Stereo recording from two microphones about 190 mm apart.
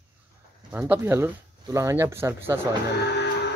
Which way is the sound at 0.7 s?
10° right (ahead or behind).